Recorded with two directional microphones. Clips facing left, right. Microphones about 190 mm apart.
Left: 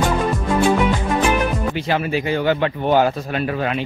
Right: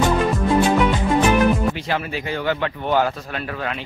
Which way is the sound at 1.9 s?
15° left (ahead or behind).